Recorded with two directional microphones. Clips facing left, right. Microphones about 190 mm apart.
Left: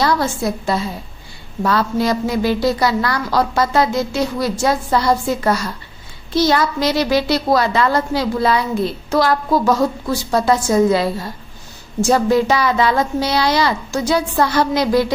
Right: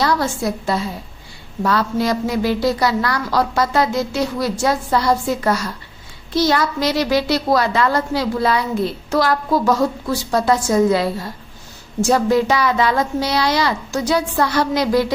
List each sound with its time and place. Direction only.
0.0 s a woman's voice: 25° left (ahead or behind)